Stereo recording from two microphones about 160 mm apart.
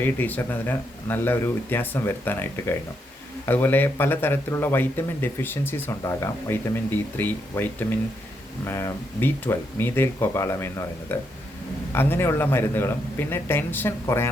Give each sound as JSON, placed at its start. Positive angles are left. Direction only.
{"t": 0.0, "sound": "a man's voice", "side_deg": 10}